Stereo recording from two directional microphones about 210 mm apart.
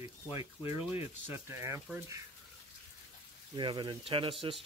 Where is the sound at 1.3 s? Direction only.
10° right (ahead or behind).